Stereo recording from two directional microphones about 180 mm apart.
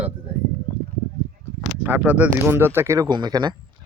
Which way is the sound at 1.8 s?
10° right (ahead or behind).